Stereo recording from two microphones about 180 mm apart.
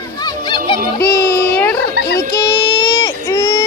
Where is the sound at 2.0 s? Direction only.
60° left (ahead or behind).